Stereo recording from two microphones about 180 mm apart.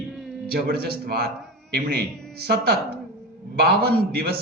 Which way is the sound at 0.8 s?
60° right (ahead or behind).